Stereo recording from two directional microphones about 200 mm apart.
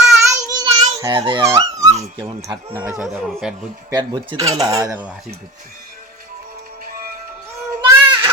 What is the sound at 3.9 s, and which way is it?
Speech, 20° right (ahead or behind).